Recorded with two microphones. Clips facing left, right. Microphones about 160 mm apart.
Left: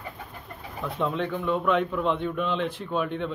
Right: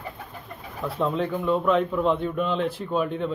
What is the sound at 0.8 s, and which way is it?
A man's voice, 5° right (ahead or behind).